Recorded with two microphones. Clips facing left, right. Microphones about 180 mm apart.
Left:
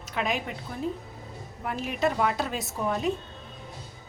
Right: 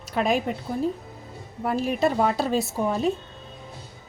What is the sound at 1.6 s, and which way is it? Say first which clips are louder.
A woman's voice: right 5 dB; 35° right (ahead or behind).